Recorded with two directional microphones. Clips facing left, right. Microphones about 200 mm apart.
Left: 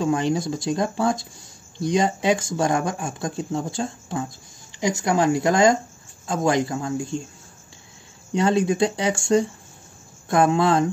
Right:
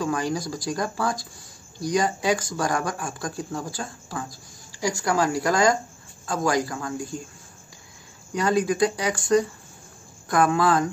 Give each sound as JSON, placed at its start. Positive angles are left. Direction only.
{"t": 0.0, "sound": "speech", "side_deg": 25}
{"t": 8.3, "sound": "speech", "side_deg": 25}